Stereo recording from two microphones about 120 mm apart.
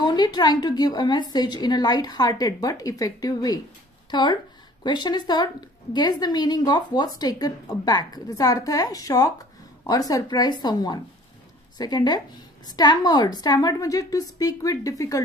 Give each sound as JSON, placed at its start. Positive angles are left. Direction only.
{"t": 0.0, "sound": "a woman's voice", "side_deg": 35}